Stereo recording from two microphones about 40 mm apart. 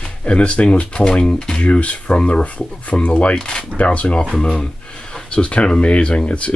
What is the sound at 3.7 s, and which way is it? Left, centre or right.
Speech, left.